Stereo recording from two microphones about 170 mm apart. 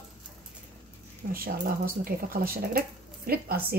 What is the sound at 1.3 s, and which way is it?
Speech, 60° right (ahead or behind).